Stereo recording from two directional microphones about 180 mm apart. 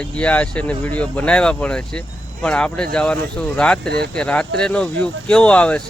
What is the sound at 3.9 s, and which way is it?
Speech, 65° right (ahead or behind).